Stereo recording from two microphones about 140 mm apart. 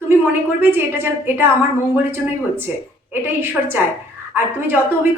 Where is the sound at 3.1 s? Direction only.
15° right (ahead or behind).